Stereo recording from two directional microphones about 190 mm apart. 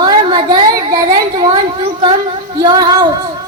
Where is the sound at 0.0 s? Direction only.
25° right (ahead or behind).